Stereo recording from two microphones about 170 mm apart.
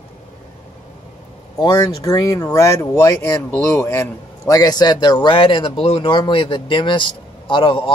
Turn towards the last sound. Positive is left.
turn(degrees=30)  # may be behind; listen again after turning